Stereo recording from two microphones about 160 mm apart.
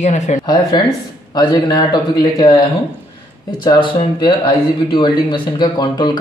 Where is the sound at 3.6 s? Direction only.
30° left (ahead or behind).